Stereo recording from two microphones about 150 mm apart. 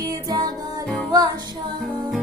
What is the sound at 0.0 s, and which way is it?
Music, 25° right (ahead or behind).